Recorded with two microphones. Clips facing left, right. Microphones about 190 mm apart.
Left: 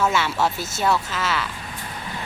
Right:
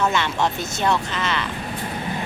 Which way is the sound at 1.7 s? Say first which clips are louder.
Right 7 dB; 50° right (ahead or behind).